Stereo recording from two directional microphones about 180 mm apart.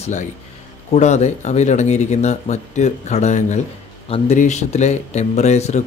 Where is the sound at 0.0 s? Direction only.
40° left (ahead or behind).